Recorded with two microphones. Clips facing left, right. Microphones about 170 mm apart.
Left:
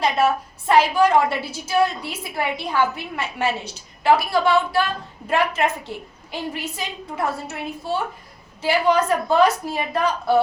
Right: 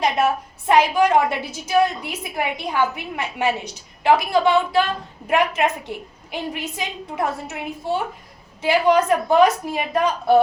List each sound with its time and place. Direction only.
0.7 s a woman's voice: 15° right (ahead or behind)